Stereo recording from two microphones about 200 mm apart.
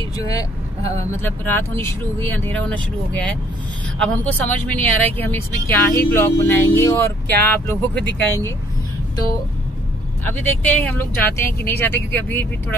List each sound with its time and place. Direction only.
0.2 s speech: 15° left (ahead or behind)
10.2 s speech: 10° left (ahead or behind)